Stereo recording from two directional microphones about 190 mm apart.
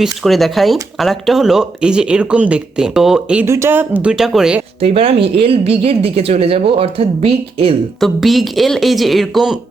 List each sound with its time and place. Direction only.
0.0 s speech: centre (ahead or behind)
4.8 s speech: 30° right (ahead or behind)
8.0 s speech: centre (ahead or behind)